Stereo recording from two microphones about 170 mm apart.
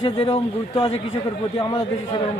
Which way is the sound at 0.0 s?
35° left (ahead or behind).